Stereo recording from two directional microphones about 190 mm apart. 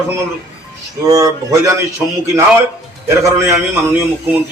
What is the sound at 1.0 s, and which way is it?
Speech, 20° right (ahead or behind).